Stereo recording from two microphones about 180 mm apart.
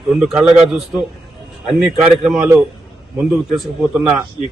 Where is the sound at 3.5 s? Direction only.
Centre (ahead or behind).